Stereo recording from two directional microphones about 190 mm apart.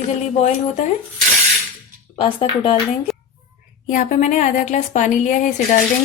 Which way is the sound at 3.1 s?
Centre (ahead or behind).